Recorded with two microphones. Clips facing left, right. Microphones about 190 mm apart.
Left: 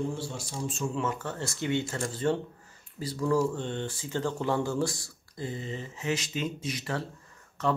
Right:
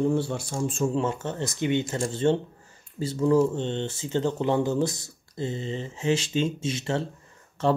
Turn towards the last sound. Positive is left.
turn(degrees=-30)  # may be behind; listen again after turning